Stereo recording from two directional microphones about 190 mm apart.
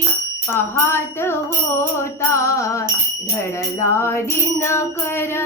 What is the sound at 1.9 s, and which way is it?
Music, 15° left (ahead or behind).